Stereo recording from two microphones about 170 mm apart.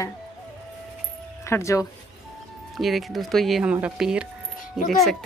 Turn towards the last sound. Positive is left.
turn(degrees=0)  # may be behind; listen again after turning